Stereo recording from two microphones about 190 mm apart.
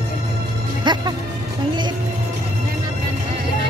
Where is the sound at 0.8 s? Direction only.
25° right (ahead or behind).